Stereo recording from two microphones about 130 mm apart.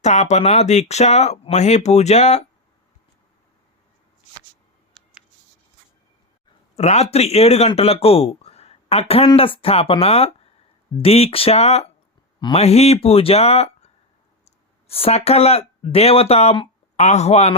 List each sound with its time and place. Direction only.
0.0 s speech: 60° left (ahead or behind)
6.7 s speech: 55° left (ahead or behind)